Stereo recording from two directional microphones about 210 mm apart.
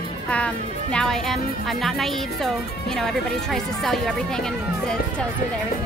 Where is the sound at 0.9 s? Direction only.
Centre (ahead or behind).